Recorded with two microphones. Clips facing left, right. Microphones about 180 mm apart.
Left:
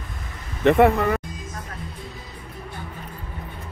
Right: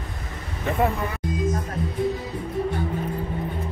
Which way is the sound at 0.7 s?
75° left (ahead or behind).